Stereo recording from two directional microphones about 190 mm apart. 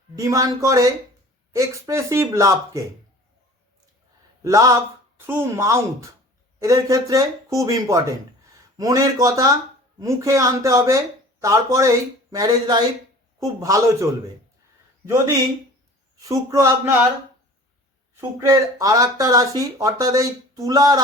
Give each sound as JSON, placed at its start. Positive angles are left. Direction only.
{"t": 0.2, "sound": "speech", "side_deg": -15}
{"t": 4.4, "sound": "speech", "side_deg": -15}
{"t": 16.1, "sound": "speech", "side_deg": -15}
{"t": 18.2, "sound": "speech", "side_deg": -15}